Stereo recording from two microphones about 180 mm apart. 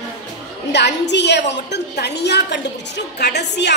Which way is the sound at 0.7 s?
70° left (ahead or behind).